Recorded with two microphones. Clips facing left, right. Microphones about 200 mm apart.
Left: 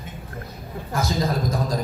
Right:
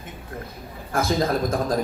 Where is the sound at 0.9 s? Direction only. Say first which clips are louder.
Right 2 dB; 50° right (ahead or behind).